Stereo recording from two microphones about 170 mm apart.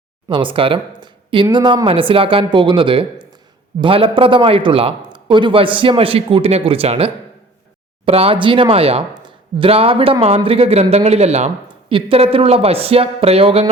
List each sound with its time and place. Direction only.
0.3 s speech: 30° right (ahead or behind)